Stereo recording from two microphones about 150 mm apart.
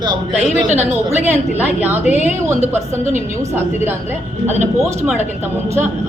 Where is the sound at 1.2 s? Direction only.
10° right (ahead or behind).